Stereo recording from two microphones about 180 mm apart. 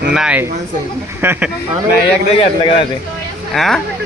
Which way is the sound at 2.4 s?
30° left (ahead or behind).